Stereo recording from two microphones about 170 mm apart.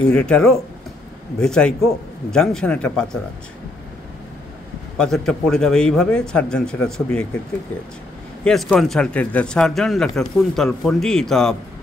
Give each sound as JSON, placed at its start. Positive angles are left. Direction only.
{"t": 0.1, "sound": "speech", "side_deg": 5}
{"t": 4.9, "sound": "speech", "side_deg": 5}
{"t": 8.5, "sound": "speech", "side_deg": 0}